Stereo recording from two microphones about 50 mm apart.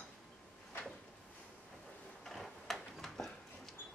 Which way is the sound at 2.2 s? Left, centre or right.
Centre.